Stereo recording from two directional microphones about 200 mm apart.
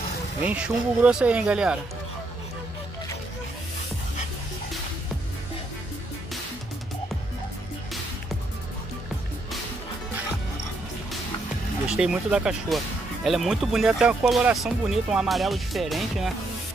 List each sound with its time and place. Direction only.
0.4 s speech: 5° right (ahead or behind)
11.9 s speech: 5° right (ahead or behind)